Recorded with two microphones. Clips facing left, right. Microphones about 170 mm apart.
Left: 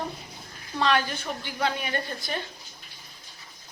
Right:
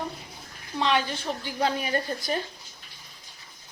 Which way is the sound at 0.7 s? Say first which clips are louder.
Left 1 dB; 20° right (ahead or behind).